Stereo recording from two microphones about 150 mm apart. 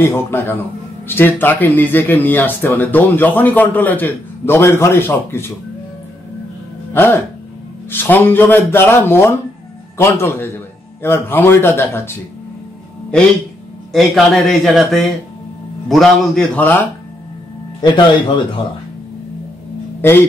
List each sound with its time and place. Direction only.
0.0 s speech: 15° left (ahead or behind)
6.9 s speech: 15° left (ahead or behind)
13.9 s a man's voice: centre (ahead or behind)
17.8 s speech: 30° left (ahead or behind)
20.0 s speech: 15° left (ahead or behind)